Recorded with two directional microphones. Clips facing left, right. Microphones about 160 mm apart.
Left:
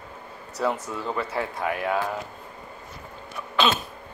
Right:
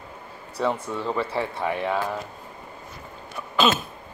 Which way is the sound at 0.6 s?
5° left (ahead or behind).